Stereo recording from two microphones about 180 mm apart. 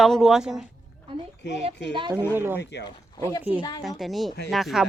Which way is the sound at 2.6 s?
70° left (ahead or behind).